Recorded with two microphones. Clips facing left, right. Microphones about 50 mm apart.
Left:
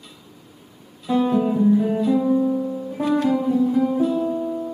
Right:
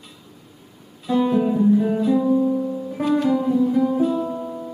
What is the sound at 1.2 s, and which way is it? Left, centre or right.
Music, centre.